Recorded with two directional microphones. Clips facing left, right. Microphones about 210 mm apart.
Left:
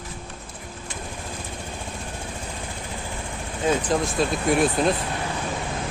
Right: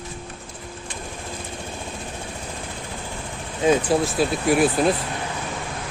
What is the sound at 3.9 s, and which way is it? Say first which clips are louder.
Speech: right 2 dB; 5° right (ahead or behind).